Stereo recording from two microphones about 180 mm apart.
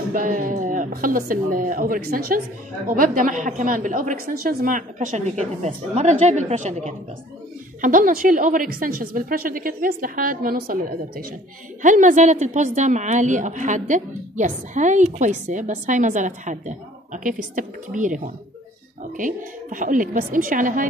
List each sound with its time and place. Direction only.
0.1 s a woman's voice: 50° right (ahead or behind)
11.8 s a woman's voice: 45° right (ahead or behind)